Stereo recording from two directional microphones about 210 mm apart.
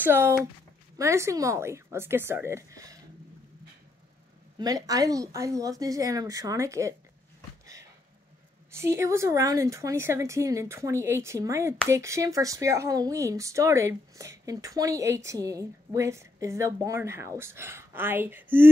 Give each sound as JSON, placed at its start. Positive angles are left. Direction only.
{"t": 0.0, "sound": "speech", "side_deg": -10}
{"t": 4.6, "sound": "speech", "side_deg": -15}
{"t": 8.7, "sound": "speech", "side_deg": -15}